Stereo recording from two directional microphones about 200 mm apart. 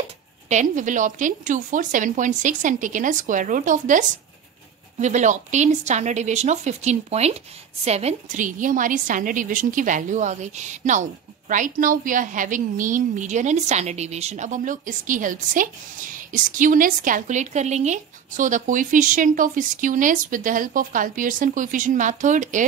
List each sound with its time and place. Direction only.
0.5 s a woman's voice: 40° right (ahead or behind)